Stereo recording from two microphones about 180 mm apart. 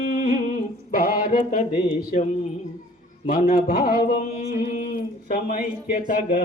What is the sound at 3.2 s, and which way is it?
Speech, 50° left (ahead or behind).